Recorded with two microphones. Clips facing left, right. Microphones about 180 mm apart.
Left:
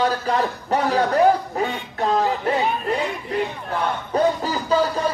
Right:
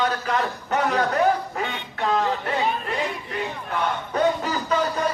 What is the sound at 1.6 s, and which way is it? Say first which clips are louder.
Quack: left 4 dB; 40° left (ahead or behind).